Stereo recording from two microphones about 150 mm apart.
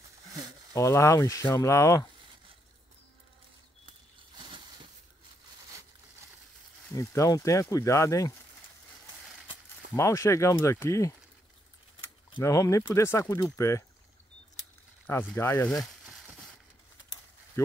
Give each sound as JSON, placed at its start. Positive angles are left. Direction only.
{"t": 0.7, "sound": "speech", "side_deg": 20}
{"t": 4.4, "sound": "a sound", "side_deg": -35}
{"t": 6.9, "sound": "speech", "side_deg": 20}
{"t": 9.9, "sound": "speech", "side_deg": 20}
{"t": 12.4, "sound": "speech", "side_deg": 20}
{"t": 15.3, "sound": "speech", "side_deg": 15}